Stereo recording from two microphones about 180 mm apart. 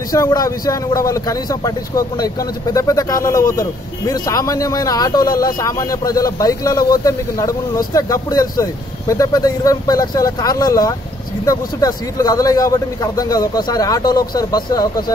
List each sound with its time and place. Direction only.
0.1 s speech: 20° left (ahead or behind)